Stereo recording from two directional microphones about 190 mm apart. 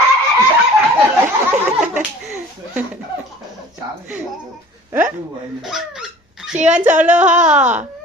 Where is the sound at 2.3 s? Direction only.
10° right (ahead or behind).